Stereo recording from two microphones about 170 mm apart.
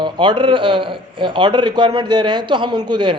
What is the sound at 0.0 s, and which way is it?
A man's voice, 30° right (ahead or behind).